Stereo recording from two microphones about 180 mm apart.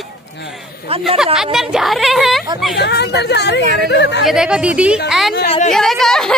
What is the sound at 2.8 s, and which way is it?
Speech, 70° left (ahead or behind).